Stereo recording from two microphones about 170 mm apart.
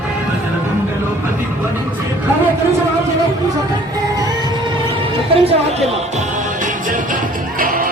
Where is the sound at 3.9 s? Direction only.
20° right (ahead or behind).